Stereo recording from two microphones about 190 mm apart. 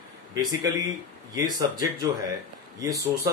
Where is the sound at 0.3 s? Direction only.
20° right (ahead or behind).